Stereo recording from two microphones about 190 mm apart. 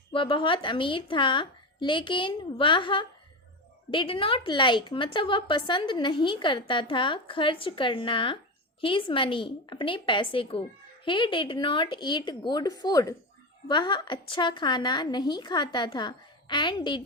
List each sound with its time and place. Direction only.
0.1 s a woman's voice: 25° left (ahead or behind)